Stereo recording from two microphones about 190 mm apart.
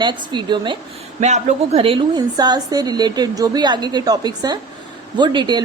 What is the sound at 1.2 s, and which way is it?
A woman's voice, 35° right (ahead or behind).